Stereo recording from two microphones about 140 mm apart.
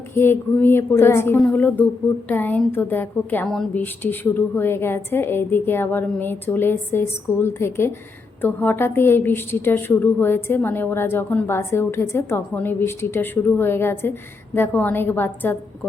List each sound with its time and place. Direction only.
0.2 s a woman's voice: 15° left (ahead or behind)